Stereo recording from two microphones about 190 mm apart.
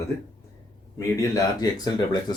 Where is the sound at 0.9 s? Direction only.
20° left (ahead or behind).